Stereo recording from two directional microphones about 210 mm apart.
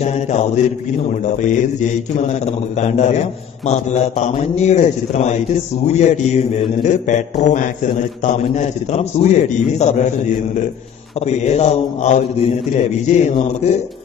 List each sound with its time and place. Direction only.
0.0 s mantra: 35° left (ahead or behind)
1.2 s a man's voice: 35° left (ahead or behind)